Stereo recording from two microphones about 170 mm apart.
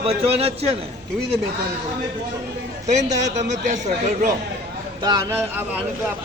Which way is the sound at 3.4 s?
45° right (ahead or behind).